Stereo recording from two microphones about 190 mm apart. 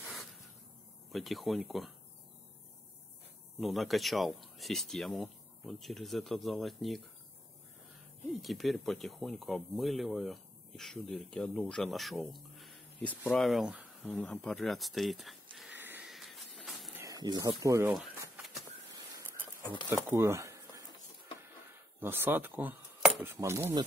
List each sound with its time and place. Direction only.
1.1 s speech: centre (ahead or behind)
3.6 s speech: centre (ahead or behind)
8.3 s speech: centre (ahead or behind)
12.4 s a sound: centre (ahead or behind)
14.1 s speech: 10° left (ahead or behind)
15.5 s a sound: centre (ahead or behind)
16.9 s speech: 15° right (ahead or behind)
19.6 s speech: 25° left (ahead or behind)
20.1 s a sound: 15° right (ahead or behind)
22.0 s speech: 10° right (ahead or behind)
23.0 s keys jangling: 5° right (ahead or behind)
23.3 s speech: 15° right (ahead or behind)